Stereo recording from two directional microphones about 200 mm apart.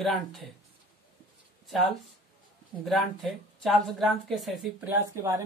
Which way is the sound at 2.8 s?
Centre (ahead or behind).